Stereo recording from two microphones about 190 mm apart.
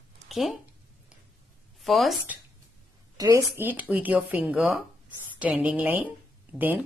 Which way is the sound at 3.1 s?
20° right (ahead or behind).